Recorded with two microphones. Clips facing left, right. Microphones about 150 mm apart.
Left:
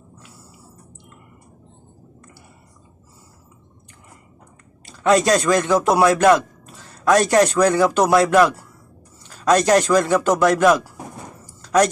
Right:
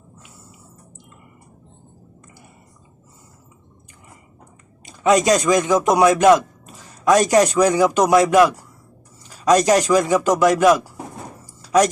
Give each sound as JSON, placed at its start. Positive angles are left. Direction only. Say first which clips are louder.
{"t": 5.0, "sound": "speech", "louder": "even", "side_deg": 0}
{"t": 5.4, "sound": "a man's voice", "louder": "right 1 dB", "side_deg": -15}
{"t": 11.6, "sound": "a sound", "louder": "right 1 dB", "side_deg": -10}